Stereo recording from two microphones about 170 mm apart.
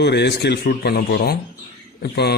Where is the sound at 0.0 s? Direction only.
80° left.